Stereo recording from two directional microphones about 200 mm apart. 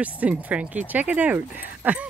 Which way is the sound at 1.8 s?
5° right (ahead or behind).